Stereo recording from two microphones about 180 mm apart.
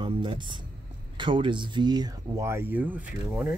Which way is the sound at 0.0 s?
25° right (ahead or behind).